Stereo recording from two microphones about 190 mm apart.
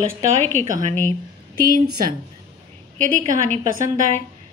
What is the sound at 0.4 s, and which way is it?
Speech, 10° left (ahead or behind).